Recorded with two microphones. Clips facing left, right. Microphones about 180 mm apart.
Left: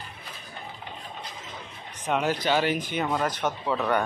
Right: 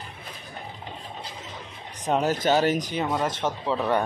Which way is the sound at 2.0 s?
40° right (ahead or behind).